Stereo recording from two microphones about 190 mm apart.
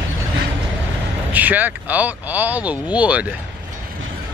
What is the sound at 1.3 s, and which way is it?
Speech, 10° right (ahead or behind).